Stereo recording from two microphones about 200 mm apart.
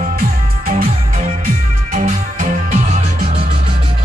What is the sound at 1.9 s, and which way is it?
Music, 40° right (ahead or behind).